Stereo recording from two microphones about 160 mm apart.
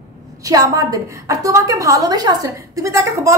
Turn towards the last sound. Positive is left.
turn(degrees=-20)  # may be behind; listen again after turning